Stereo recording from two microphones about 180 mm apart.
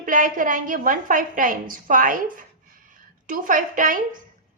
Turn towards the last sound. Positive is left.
turn(degrees=-50)  # may be behind; listen again after turning